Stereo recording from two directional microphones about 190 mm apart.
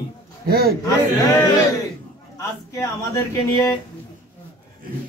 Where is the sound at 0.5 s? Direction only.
55° right (ahead or behind).